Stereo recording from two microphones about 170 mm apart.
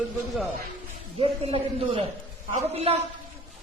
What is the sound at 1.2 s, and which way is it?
A man's voice, 35° right (ahead or behind).